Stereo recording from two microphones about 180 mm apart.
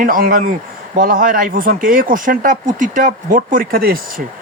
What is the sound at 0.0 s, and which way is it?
Speech, 50° right (ahead or behind).